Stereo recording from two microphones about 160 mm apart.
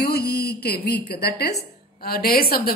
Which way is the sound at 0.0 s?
80° left.